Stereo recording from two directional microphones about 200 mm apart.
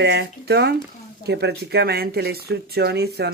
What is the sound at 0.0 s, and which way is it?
Speech, 55° right (ahead or behind).